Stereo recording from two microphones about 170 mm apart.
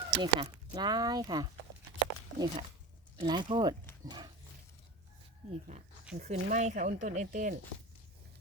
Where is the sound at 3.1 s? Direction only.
30° right (ahead or behind).